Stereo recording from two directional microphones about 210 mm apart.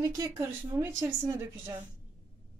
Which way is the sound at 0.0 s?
15° right (ahead or behind).